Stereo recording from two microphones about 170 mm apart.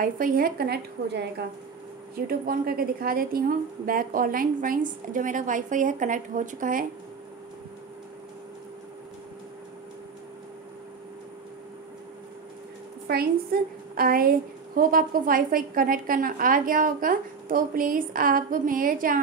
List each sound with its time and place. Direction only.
0.0 s a woman's voice: 55° right (ahead or behind); by 1.3 s 70° right (ahead or behind)
2.1 s a woman's voice: 60° right (ahead or behind)
13.0 s a woman's voice: 60° right (ahead or behind)